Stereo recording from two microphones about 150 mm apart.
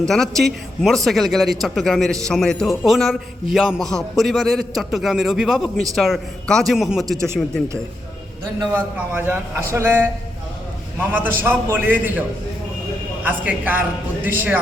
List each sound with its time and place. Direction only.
0.1 s a man's voice: centre (ahead or behind)
9.1 s a man's voice: 15° right (ahead or behind)
11.1 s a man's voice: 15° right (ahead or behind)
13.2 s a man's voice: 10° right (ahead or behind)